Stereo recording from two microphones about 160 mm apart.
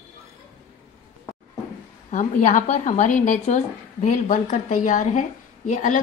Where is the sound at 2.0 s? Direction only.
50° left (ahead or behind).